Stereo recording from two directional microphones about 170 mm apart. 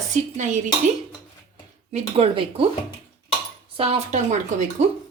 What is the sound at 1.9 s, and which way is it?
Speech, 35° right (ahead or behind).